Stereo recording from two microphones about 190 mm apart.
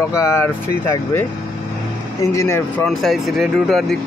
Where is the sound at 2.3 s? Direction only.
15° left (ahead or behind).